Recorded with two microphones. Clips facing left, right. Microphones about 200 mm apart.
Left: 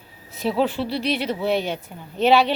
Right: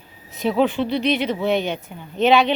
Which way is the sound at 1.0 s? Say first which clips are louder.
Right 3 dB; 35° left (ahead or behind).